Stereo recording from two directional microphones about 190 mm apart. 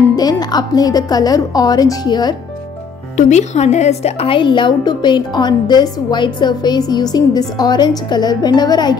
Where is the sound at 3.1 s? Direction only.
40° left (ahead or behind); by 9.0 s 20° left (ahead or behind).